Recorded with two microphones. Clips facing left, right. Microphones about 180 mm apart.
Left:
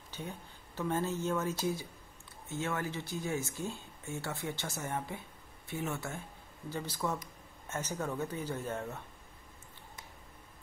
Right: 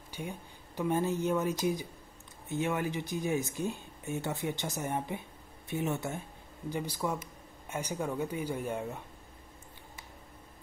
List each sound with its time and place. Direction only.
0.1 s speech: 15° right (ahead or behind)